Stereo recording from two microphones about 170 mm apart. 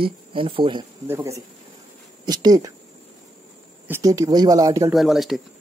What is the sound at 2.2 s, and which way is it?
Speech, 25° right (ahead or behind).